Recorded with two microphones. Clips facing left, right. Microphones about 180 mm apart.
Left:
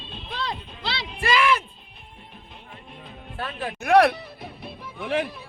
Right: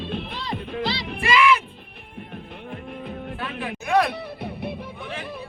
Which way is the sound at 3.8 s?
70° left (ahead or behind).